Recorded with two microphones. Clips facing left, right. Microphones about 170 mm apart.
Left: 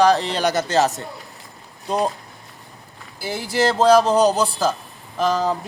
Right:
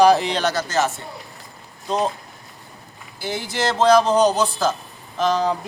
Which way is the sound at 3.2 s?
10° left (ahead or behind).